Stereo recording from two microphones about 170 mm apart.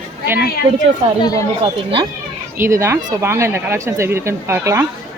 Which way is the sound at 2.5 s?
15° right (ahead or behind).